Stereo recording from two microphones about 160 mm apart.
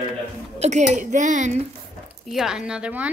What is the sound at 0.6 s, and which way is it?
Speech, 45° right (ahead or behind).